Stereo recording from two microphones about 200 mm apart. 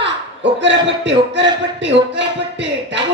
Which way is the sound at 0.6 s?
60° right (ahead or behind).